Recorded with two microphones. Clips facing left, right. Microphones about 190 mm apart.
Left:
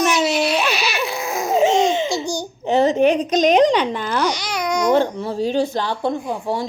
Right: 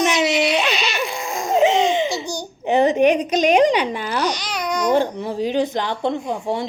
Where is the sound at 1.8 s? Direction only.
15° right (ahead or behind).